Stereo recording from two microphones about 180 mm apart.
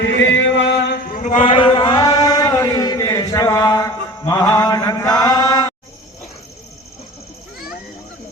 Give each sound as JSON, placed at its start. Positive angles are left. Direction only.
{"t": 0.0, "sound": "chant", "side_deg": 90}
{"t": 1.0, "sound": "chant", "side_deg": 45}